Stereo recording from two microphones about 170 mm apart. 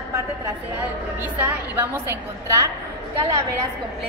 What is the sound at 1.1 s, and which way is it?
A woman's voice, 10° right (ahead or behind).